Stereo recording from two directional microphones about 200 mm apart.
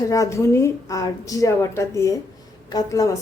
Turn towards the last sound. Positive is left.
turn(degrees=15)  # may be behind; listen again after turning